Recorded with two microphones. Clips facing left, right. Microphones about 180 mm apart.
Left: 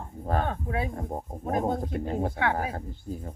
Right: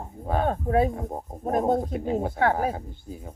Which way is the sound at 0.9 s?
Centre (ahead or behind).